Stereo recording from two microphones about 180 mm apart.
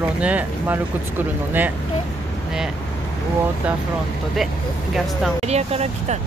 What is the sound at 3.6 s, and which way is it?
Speech, 5° right (ahead or behind).